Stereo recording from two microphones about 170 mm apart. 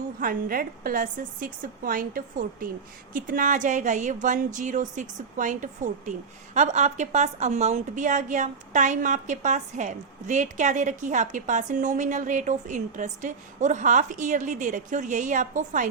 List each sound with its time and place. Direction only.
0.2 s a woman's voice: 55° right (ahead or behind)